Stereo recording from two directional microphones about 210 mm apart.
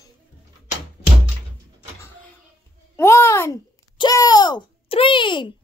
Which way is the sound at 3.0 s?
15° left (ahead or behind).